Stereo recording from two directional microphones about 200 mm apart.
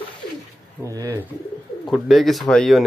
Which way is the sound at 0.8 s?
15° right (ahead or behind).